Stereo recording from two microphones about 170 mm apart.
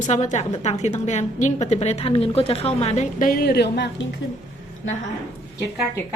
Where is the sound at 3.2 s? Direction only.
60° left (ahead or behind); by 4.0 s 85° left.